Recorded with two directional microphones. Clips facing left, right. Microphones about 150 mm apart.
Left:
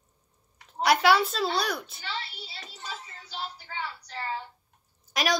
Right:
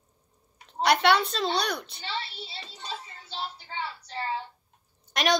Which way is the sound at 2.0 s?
25° right (ahead or behind).